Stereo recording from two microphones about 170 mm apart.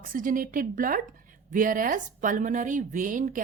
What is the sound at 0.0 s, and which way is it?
Speech, 55° right (ahead or behind).